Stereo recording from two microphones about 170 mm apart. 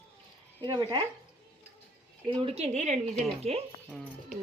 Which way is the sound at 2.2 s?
30° right (ahead or behind).